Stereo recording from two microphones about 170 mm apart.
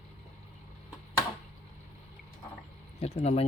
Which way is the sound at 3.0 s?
35° left (ahead or behind).